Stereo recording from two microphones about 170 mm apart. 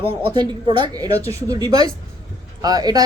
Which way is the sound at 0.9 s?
20° right (ahead or behind).